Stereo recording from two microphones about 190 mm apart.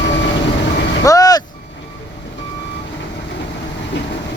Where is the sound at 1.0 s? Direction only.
20° left (ahead or behind).